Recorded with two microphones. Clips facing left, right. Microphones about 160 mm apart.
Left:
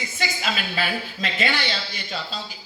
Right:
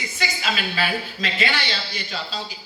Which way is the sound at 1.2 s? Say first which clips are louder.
Left 1 dB; 50° left (ahead or behind).